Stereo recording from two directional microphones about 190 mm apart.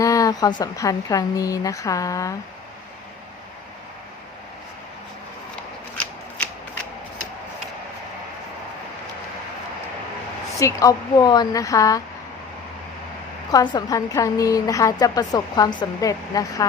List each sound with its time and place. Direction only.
0.0 s a woman's voice: 20° left (ahead or behind)
6.0 s scissors: 5° left (ahead or behind)
10.6 s a woman's voice: 15° left (ahead or behind)
13.5 s a woman's voice: 20° left (ahead or behind)